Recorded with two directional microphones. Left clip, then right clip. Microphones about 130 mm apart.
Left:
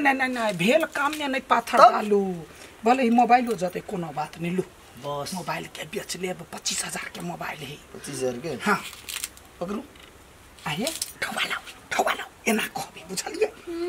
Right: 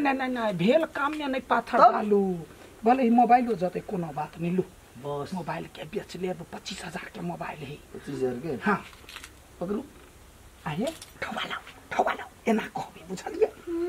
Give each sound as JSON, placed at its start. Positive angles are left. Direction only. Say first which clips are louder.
{"t": 0.0, "sound": "a woman's voice", "louder": "left 4 dB", "side_deg": 0}
{"t": 8.5, "sound": "speech", "louder": "left 3 dB", "side_deg": 5}
{"t": 10.6, "sound": "speech", "louder": "left 3 dB", "side_deg": 0}